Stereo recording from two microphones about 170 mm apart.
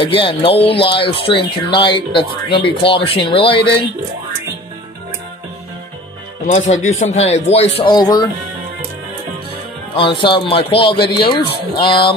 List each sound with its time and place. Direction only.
0.0 s speech: 30° left (ahead or behind)
6.4 s speech: 45° left (ahead or behind); by 8.3 s 25° left (ahead or behind)
9.9 s speech: 30° left (ahead or behind)